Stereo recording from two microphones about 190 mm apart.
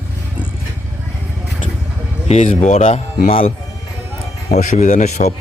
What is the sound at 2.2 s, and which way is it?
A man's voice, 35° left (ahead or behind).